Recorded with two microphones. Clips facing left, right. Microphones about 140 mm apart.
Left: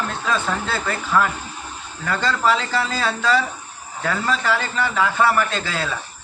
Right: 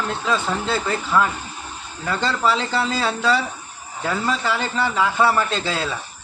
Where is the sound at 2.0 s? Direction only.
20° right (ahead or behind).